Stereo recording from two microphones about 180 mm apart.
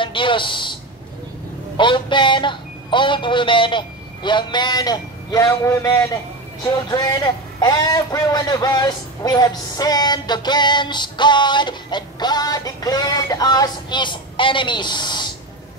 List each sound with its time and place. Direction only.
0.0 s speech: 30° left (ahead or behind)
1.8 s a man's voice: 25° left (ahead or behind)